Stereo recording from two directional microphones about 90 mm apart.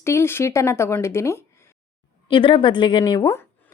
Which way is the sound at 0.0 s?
30° left (ahead or behind).